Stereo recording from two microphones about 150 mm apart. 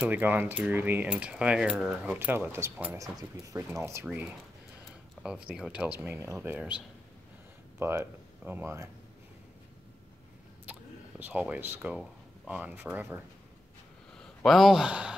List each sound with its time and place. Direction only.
0.0 s speech: 10° right (ahead or behind)
5.2 s a sound: 5° left (ahead or behind)
5.5 s speech: 5° right (ahead or behind)
7.8 s speech: 15° right (ahead or behind)
10.7 s a sound: 10° right (ahead or behind)
12.0 s speech: 10° right (ahead or behind)
14.1 s speech: 5° left (ahead or behind)